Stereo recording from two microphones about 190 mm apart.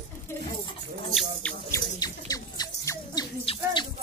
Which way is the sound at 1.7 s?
20° left (ahead or behind).